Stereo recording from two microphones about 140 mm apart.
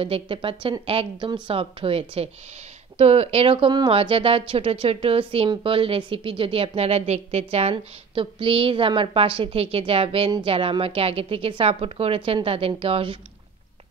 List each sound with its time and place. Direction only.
0.0 s a woman's voice: 40° right (ahead or behind)